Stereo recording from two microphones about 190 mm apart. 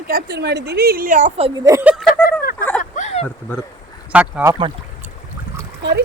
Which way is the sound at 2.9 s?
35° left (ahead or behind).